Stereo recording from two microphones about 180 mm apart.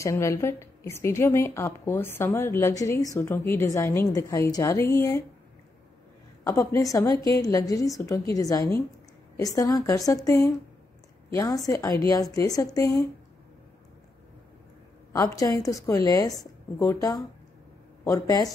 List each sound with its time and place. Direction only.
0.0 s a woman's voice: 15° left (ahead or behind)
6.4 s a woman's voice: 15° left (ahead or behind)
15.1 s a woman's voice: 20° left (ahead or behind)